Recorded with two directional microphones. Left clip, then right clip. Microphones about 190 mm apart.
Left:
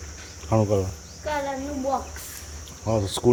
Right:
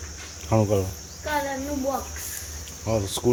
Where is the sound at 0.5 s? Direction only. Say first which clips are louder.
Even; 5° left (ahead or behind).